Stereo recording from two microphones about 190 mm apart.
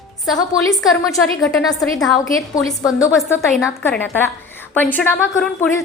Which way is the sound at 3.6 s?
15° left (ahead or behind).